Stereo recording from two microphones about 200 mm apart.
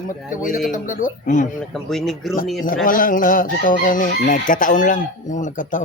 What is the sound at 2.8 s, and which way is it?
Speech, 45° left (ahead or behind).